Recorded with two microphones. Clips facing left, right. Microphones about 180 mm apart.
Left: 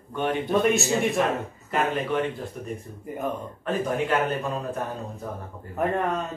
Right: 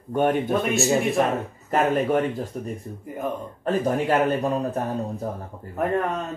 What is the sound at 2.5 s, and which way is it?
A man's voice, 40° right (ahead or behind).